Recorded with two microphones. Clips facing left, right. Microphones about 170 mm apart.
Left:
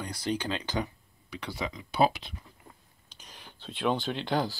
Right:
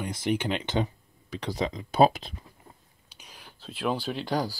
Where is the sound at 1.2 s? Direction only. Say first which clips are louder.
Right 5 dB; 40° right (ahead or behind).